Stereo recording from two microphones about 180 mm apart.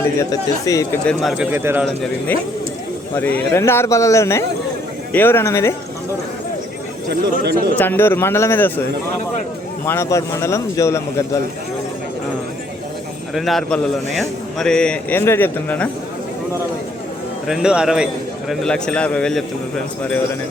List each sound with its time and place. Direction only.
0.2 s speech: 20° left (ahead or behind)
1.0 s a man's voice: centre (ahead or behind)
1.5 s speech: 10° right (ahead or behind)
3.2 s a man's voice: 10° left (ahead or behind)
7.1 s speech: 65° right (ahead or behind)
7.8 s a man's voice: 10° left (ahead or behind)
9.8 s a man's voice: 15° left (ahead or behind)
13.3 s a man's voice: centre (ahead or behind)
17.4 s a man's voice: 5° right (ahead or behind)